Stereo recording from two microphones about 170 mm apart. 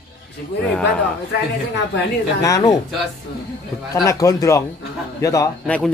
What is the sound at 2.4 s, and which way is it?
Speech, 20° left (ahead or behind).